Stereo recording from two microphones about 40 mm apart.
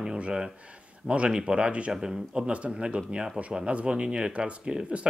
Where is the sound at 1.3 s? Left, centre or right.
Right.